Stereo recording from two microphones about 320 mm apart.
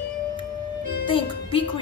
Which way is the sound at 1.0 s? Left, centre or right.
Centre.